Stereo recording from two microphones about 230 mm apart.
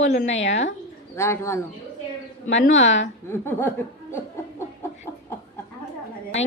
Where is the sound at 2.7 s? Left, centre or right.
Left.